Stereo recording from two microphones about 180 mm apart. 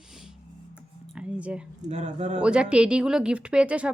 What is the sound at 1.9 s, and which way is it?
Speech, 40° right (ahead or behind).